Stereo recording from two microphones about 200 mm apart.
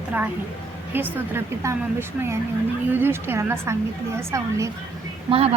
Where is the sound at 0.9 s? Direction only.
10° right (ahead or behind).